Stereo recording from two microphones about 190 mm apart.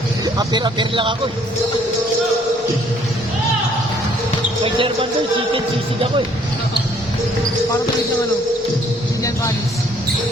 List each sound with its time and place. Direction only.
0.3 s speech: 25° right (ahead or behind)
4.6 s speech: 25° right (ahead or behind)